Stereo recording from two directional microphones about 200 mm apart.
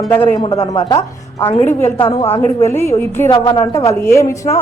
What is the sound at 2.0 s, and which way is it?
Speech, 30° left (ahead or behind).